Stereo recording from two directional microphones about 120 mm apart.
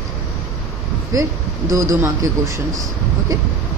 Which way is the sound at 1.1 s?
25° right (ahead or behind).